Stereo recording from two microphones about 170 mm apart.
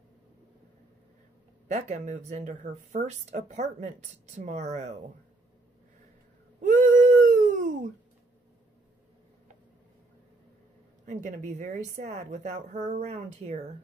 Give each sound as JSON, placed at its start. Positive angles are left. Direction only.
{"t": 1.7, "sound": "speech", "side_deg": -45}
{"t": 6.6, "sound": "a sound", "side_deg": -50}
{"t": 11.1, "sound": "speech", "side_deg": -45}